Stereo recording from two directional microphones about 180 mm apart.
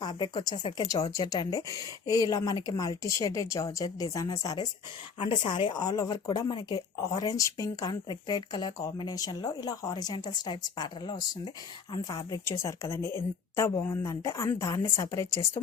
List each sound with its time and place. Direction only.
0.0 s speech: 25° left (ahead or behind)